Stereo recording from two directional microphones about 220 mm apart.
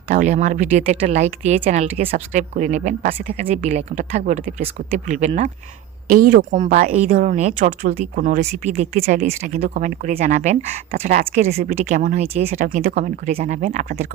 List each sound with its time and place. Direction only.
0.1 s speech: 35° right (ahead or behind)
12.5 s speech: 40° right (ahead or behind)